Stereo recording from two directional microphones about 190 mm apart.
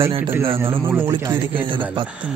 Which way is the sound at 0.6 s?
10° right (ahead or behind).